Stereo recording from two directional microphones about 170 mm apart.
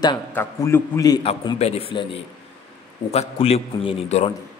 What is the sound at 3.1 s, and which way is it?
A man's voice, 35° left (ahead or behind).